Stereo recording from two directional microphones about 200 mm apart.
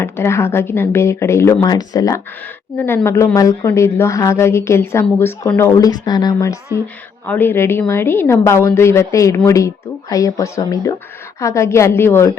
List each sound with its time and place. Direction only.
0.0 s a woman's voice: 15° left (ahead or behind)